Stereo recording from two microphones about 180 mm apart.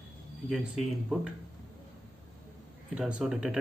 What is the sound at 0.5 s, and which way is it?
Speech, centre (ahead or behind).